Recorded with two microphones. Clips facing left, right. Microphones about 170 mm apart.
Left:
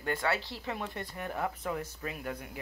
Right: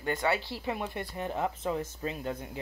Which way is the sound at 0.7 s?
15° right (ahead or behind).